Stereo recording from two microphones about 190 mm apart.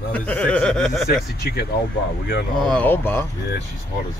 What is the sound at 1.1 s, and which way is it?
Speech, 55° left (ahead or behind).